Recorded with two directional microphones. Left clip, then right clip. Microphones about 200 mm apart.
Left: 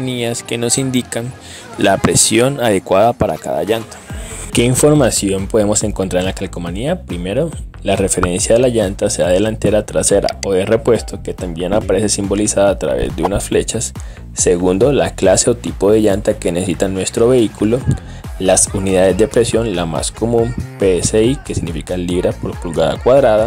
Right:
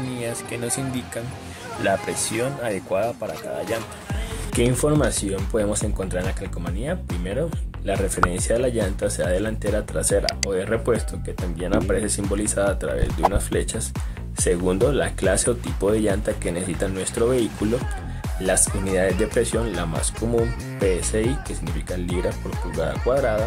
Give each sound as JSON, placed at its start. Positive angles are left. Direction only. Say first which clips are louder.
{"t": 0.1, "sound": "speech", "louder": "left 12 dB", "side_deg": 45}
{"t": 4.5, "sound": "speech", "louder": "left 9 dB", "side_deg": 45}
{"t": 20.2, "sound": "speech", "louder": "left 8 dB", "side_deg": 0}
{"t": 20.8, "sound": "speech", "louder": "left 10 dB", "side_deg": 40}